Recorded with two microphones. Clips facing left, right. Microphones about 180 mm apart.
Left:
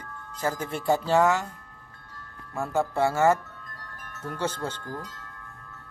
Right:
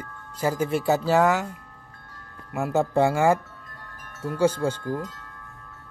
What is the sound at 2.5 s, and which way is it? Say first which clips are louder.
Speech: right 4 dB; 15° right (ahead or behind).